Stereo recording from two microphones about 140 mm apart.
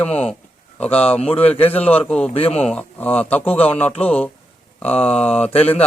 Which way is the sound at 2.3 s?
45° left (ahead or behind).